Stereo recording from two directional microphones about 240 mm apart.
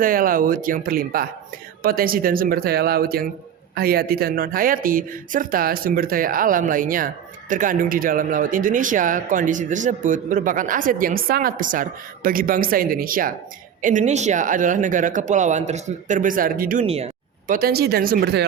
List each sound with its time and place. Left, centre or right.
0.0 s speech: right
16.8 s speech: right